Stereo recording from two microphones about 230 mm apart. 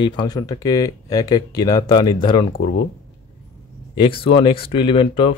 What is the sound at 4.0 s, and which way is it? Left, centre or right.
Speech, left.